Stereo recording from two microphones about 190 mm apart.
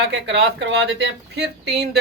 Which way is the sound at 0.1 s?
65° right (ahead or behind).